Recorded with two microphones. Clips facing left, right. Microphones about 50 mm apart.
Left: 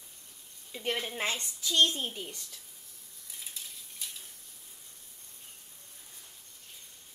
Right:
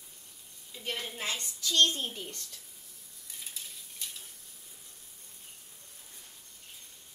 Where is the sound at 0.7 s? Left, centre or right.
Left.